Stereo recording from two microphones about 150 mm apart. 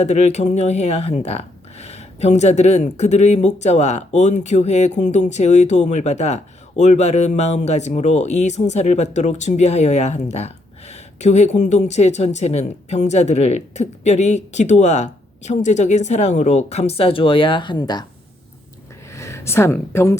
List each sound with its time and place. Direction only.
0.0 s speech: 50° left (ahead or behind); by 18.0 s 30° left (ahead or behind)
19.1 s speech: 20° left (ahead or behind)